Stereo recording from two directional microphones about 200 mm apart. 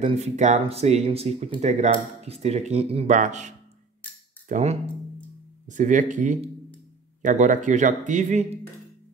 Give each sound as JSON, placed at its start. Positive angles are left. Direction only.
{"t": 0.0, "sound": "speech", "side_deg": -35}